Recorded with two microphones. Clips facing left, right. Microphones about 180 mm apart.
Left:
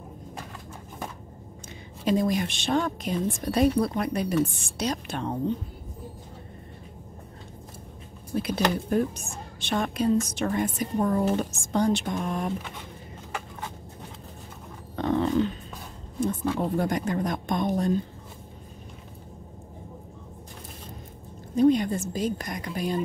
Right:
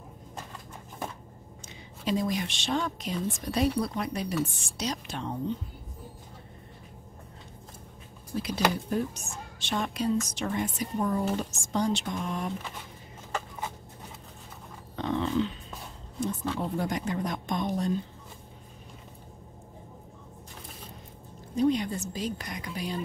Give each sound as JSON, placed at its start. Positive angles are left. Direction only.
{"t": 2.0, "sound": "a woman's voice", "side_deg": 50}
{"t": 8.4, "sound": "a woman's voice", "side_deg": 55}
{"t": 15.0, "sound": "grunt", "side_deg": 50}
{"t": 16.2, "sound": "a woman's voice", "side_deg": 55}
{"t": 21.5, "sound": "a woman's voice", "side_deg": 50}